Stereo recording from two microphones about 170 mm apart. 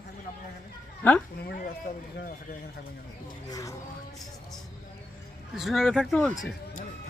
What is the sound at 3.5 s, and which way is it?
Music, 20° left (ahead or behind).